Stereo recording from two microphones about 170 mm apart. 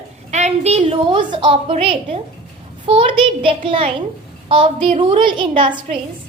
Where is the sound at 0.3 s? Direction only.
40° right (ahead or behind).